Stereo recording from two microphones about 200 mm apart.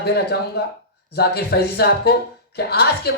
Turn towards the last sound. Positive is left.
turn(degrees=55)  # may be behind; listen again after turning